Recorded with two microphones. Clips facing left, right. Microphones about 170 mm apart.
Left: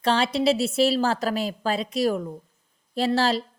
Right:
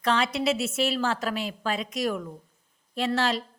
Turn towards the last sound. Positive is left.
turn(degrees=35)  # may be behind; listen again after turning